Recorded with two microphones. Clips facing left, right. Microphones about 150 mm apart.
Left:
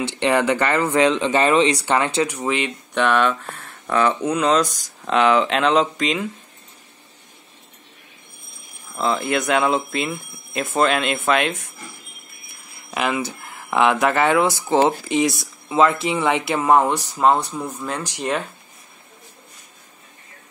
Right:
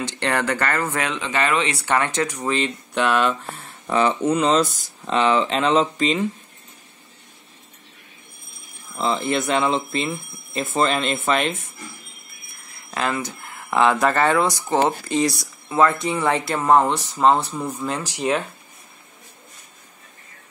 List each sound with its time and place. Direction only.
0.2 s speech: 15° left (ahead or behind)
1.8 s speech: 15° left (ahead or behind)
2.9 s speech: 10° right (ahead or behind)
8.9 s speech: centre (ahead or behind)
12.9 s speech: 10° left (ahead or behind)
14.8 s speech: 15° left (ahead or behind)
15.1 s speech: centre (ahead or behind)